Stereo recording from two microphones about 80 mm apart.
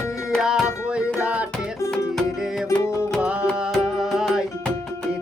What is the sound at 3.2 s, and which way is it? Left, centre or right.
Music, centre.